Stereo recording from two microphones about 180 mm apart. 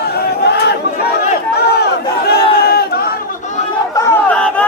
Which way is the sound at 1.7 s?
60° left (ahead or behind).